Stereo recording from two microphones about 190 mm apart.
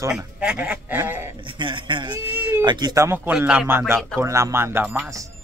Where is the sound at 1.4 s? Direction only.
25° right (ahead or behind).